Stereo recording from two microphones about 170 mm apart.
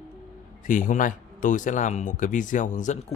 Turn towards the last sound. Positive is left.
turn(degrees=45)  # may be behind; listen again after turning